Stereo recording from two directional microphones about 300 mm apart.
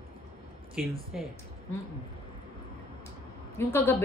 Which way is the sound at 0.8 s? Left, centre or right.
Centre.